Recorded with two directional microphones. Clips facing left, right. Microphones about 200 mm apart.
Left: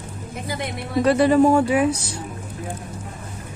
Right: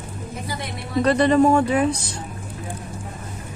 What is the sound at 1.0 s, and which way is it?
Speech, 5° left (ahead or behind).